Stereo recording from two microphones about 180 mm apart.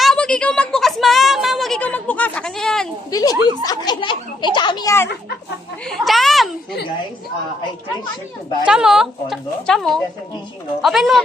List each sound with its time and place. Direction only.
0.0 s a woman's voice: 5° left (ahead or behind)
3.1 s a child's voice: 20° left (ahead or behind)
5.9 s speech: centre (ahead or behind)
8.6 s speech: 5° right (ahead or behind)